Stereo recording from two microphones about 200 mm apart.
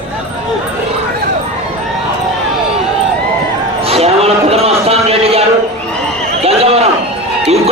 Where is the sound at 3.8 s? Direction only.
30° right (ahead or behind).